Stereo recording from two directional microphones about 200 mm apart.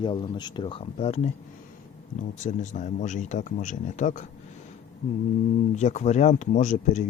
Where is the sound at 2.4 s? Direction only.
35° left (ahead or behind).